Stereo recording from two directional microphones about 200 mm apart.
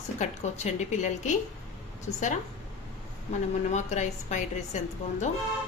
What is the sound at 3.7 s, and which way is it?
A woman's voice, 35° left (ahead or behind).